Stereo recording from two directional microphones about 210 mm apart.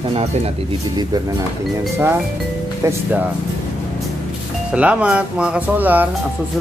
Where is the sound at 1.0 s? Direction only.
20° right (ahead or behind).